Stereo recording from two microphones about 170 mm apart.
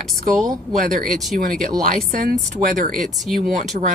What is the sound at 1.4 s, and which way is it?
Speech, 55° right (ahead or behind).